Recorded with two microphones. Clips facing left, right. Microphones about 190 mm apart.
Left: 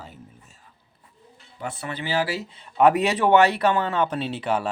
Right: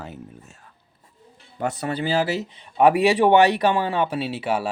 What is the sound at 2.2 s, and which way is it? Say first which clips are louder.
Speech: right 3 dB; 20° right (ahead or behind).